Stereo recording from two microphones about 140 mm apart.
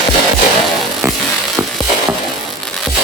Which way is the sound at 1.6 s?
15° right (ahead or behind).